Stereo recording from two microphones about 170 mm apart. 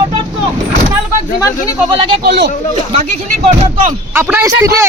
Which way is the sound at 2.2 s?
75° right (ahead or behind).